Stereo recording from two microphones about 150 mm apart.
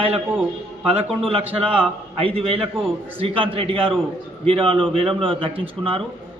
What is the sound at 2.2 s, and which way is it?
A man's voice, 40° right (ahead or behind).